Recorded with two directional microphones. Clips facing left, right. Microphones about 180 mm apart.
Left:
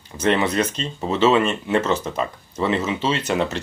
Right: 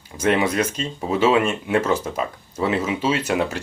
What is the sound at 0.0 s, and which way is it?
Speech, 10° right (ahead or behind).